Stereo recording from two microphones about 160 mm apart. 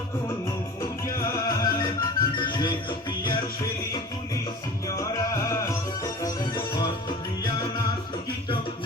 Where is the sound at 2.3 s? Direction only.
30° left (ahead or behind).